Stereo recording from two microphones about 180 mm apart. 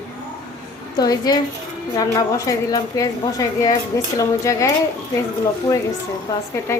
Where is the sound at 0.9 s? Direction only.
20° left (ahead or behind).